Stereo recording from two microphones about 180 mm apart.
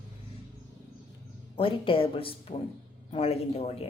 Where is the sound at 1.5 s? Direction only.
30° left (ahead or behind).